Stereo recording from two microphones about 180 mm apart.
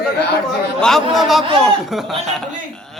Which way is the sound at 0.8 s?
Centre (ahead or behind).